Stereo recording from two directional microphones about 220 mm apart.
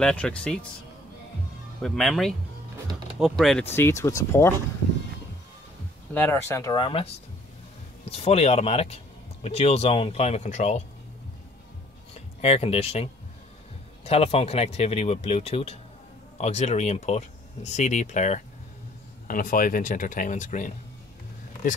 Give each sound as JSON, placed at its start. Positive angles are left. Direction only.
{"t": 0.0, "sound": "speech", "side_deg": 5}
{"t": 1.8, "sound": "speech", "side_deg": 0}
{"t": 6.1, "sound": "speech", "side_deg": 10}
{"t": 12.1, "sound": "speech", "side_deg": 25}